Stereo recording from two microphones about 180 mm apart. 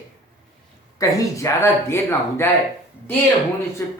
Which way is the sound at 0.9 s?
15° left (ahead or behind).